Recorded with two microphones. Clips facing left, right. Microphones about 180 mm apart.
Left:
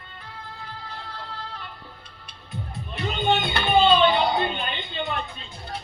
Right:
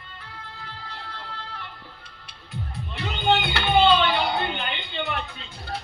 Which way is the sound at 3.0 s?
70° right (ahead or behind).